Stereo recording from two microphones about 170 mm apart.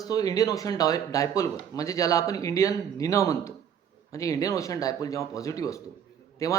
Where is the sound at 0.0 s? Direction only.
20° left (ahead or behind).